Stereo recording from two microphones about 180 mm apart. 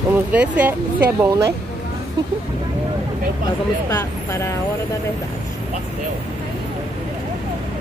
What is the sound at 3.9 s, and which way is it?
Speech, 15° left (ahead or behind).